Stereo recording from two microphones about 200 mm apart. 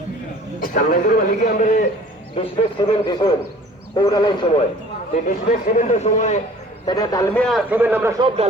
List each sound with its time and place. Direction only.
0.6 s a man's voice: 45° left (ahead or behind)
2.3 s speech: 25° left (ahead or behind)
5.1 s a man's voice: 40° left (ahead or behind)
6.8 s speech: 20° left (ahead or behind)
7.4 s a man's voice: 5° right (ahead or behind)